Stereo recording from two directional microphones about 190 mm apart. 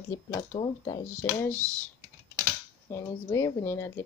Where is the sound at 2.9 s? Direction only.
15° left (ahead or behind).